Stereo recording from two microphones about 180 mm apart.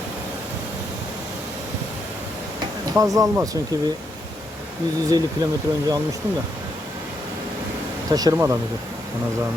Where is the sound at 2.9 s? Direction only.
20° right (ahead or behind).